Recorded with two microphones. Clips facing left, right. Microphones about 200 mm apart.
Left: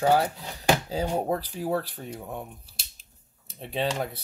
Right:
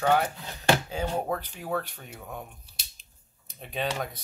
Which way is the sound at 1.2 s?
35° left (ahead or behind).